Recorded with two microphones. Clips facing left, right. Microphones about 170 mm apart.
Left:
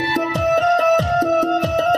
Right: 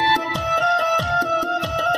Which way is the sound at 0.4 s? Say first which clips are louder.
Left 6 dB; 55° left (ahead or behind).